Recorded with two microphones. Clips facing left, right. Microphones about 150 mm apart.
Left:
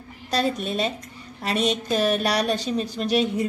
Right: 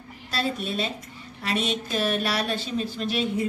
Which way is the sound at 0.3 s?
45° left (ahead or behind).